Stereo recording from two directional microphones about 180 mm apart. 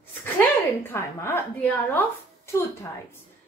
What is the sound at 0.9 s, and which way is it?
A woman's voice, 15° left (ahead or behind).